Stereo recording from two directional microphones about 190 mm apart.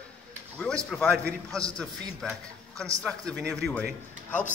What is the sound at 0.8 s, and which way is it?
Speech, 5° left (ahead or behind).